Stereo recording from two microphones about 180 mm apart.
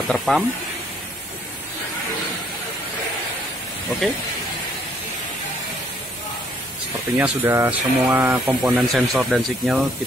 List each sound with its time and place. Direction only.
0.1 s speech: centre (ahead or behind)
7.2 s speech: 10° right (ahead or behind)